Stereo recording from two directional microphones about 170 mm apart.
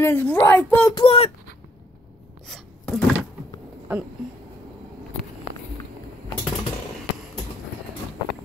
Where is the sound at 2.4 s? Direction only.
Centre (ahead or behind).